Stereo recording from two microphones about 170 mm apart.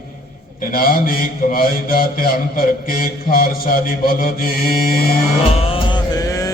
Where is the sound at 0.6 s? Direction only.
55° left (ahead or behind).